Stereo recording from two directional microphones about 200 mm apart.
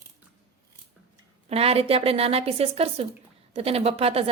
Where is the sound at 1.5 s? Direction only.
30° right (ahead or behind).